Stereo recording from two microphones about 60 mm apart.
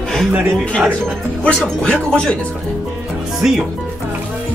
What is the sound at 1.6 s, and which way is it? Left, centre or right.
Speech, centre.